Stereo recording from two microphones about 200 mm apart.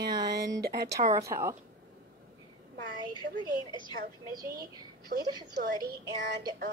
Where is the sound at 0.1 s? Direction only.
20° right (ahead or behind).